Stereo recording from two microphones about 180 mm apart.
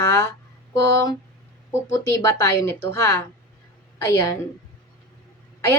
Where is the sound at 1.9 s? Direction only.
15° left (ahead or behind).